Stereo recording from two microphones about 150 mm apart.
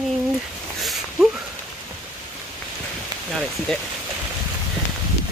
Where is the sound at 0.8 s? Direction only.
Centre (ahead or behind).